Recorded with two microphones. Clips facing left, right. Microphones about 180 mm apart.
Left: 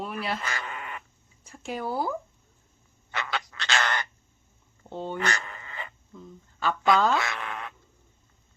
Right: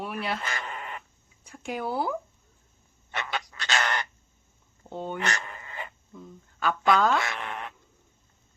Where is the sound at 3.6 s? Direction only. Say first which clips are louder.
Even; 15° right (ahead or behind).